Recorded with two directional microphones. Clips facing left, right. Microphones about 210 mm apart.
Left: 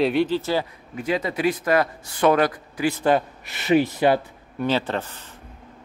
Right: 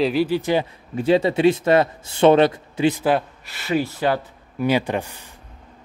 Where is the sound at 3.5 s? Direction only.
20° left (ahead or behind).